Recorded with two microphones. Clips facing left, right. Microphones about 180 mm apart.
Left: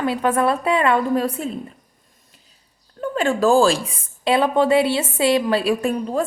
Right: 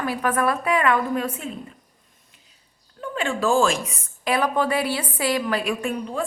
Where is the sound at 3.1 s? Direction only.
40° left (ahead or behind).